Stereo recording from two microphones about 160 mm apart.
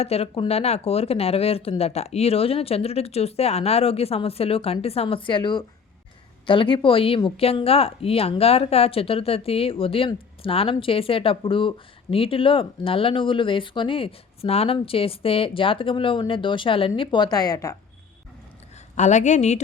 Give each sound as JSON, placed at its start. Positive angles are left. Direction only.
{"t": 0.0, "sound": "speech", "side_deg": 40}
{"t": 18.9, "sound": "a woman's voice", "side_deg": 50}